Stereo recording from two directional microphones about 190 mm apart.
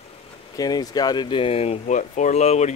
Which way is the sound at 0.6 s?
20° left (ahead or behind).